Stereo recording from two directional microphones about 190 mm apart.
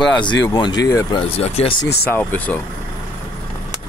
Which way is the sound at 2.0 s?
10° left (ahead or behind).